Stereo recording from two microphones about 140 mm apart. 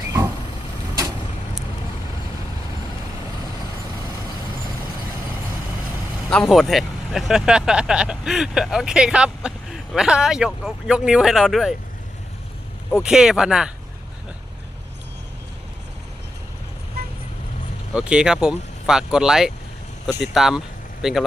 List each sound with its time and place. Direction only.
6.3 s speech: centre (ahead or behind)
12.9 s speech: 5° right (ahead or behind)
17.0 s vehicle: 90° right
17.9 s speech: 5° right (ahead or behind)